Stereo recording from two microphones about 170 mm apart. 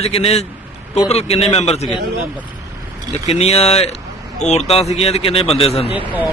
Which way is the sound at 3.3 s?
40° left (ahead or behind).